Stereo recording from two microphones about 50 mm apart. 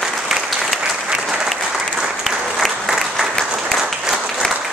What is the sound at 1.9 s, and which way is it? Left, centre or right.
Applause, centre.